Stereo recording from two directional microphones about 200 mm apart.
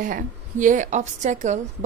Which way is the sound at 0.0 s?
40° right (ahead or behind).